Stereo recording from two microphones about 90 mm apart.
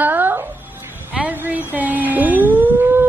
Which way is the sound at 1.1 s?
15° right (ahead or behind).